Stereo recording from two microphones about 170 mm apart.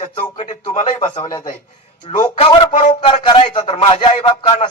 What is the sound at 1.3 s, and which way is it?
Speech, 25° left (ahead or behind).